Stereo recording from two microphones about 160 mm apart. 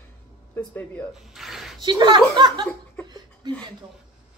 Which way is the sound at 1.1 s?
Centre (ahead or behind).